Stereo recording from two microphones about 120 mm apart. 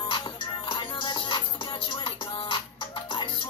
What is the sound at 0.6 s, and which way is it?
Music, 40° left (ahead or behind).